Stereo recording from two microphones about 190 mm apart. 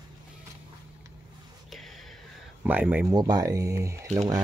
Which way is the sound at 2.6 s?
10° right (ahead or behind).